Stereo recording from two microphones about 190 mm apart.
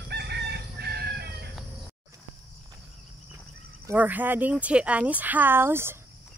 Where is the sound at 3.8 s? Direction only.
10° right (ahead or behind).